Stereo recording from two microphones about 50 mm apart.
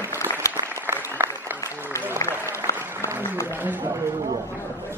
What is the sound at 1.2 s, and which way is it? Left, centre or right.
Applause, right.